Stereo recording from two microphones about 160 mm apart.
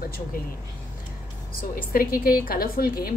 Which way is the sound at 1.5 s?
65° left (ahead or behind).